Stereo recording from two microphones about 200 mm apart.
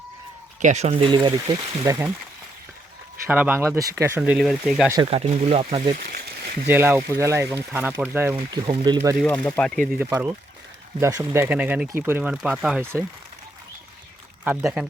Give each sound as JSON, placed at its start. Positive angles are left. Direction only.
{"t": 0.6, "sound": "speech", "side_deg": -35}
{"t": 3.2, "sound": "speech", "side_deg": -10}
{"t": 5.1, "sound": "speech", "side_deg": -30}
{"t": 6.1, "sound": "a sound", "side_deg": -50}
{"t": 6.7, "sound": "speech", "side_deg": -10}
{"t": 8.4, "sound": "speech", "side_deg": -25}
{"t": 9.2, "sound": "speech", "side_deg": 5}
{"t": 10.1, "sound": "speech", "side_deg": -15}
{"t": 14.4, "sound": "speech", "side_deg": -5}